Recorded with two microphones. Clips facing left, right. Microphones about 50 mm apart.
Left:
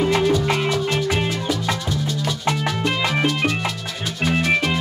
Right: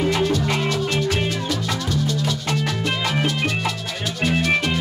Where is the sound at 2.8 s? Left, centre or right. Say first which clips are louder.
Left 2 dB; centre.